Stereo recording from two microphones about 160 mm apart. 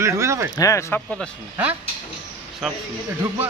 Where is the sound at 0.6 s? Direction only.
20° left (ahead or behind).